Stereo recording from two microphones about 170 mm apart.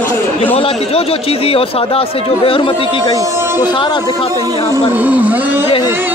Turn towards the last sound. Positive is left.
turn(degrees=-10)  # may be behind; listen again after turning